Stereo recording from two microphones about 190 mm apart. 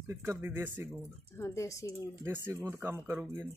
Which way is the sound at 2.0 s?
10° right (ahead or behind).